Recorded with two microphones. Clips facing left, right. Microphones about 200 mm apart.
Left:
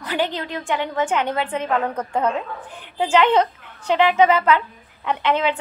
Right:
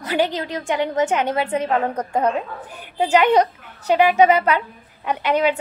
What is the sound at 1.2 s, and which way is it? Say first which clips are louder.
A woman's voice: right 3 dB; 40° right (ahead or behind).